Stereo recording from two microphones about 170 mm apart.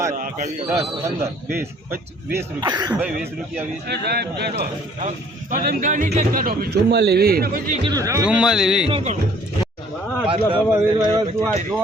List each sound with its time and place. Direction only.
0.1 s a man's voice: 45° right (ahead or behind)
0.7 s a man's voice: 15° right (ahead or behind)
2.6 s speech: 25° right (ahead or behind)
3.8 s a man's voice: 75° right (ahead or behind)
4.9 s a man's voice: 50° right (ahead or behind)
7.9 s speech: 20° right (ahead or behind)
8.3 s speech: 5° right (ahead or behind)
8.9 s a man's voice: 30° right (ahead or behind)
10.2 s a man's voice: 30° right (ahead or behind)
10.7 s speech: 20° right (ahead or behind)